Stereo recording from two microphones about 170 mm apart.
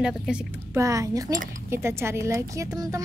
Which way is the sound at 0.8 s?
20° right (ahead or behind).